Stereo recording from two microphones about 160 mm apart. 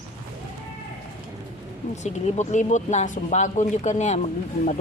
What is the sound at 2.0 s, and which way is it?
Speech, 45° left (ahead or behind).